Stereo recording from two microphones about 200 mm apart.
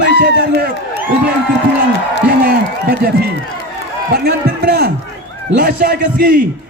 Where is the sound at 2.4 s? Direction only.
50° right (ahead or behind).